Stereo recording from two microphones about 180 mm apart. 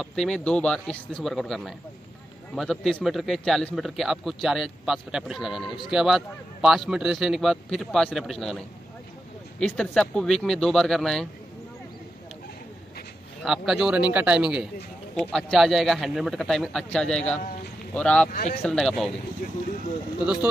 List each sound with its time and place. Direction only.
0.0 s a man's voice: 5° left (ahead or behind)
9.6 s a man's voice: 5° left (ahead or behind)
13.4 s a man's voice: centre (ahead or behind)
18.3 s speech: 55° left (ahead or behind)
18.6 s a man's voice: 5° left (ahead or behind)